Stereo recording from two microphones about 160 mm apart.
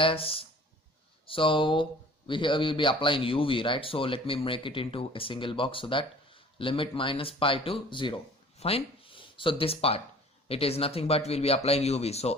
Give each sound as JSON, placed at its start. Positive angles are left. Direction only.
{"t": 0.0, "sound": "speech", "side_deg": 35}